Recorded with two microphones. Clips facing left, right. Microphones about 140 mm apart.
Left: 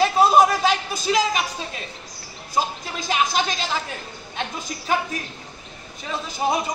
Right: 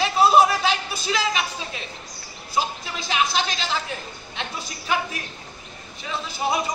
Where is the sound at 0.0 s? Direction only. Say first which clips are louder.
Left 1 dB; 45° left (ahead or behind).